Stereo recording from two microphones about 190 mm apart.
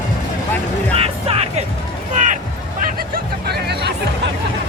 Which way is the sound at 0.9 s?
30° right (ahead or behind).